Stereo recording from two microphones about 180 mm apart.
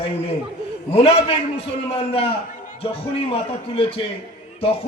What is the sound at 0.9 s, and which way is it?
A man's voice, 35° left (ahead or behind).